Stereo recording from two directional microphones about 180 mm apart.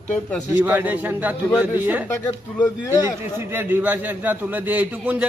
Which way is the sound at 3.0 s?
15° right (ahead or behind).